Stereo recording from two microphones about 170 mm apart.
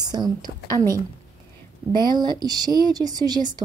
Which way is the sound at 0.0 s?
25° right (ahead or behind).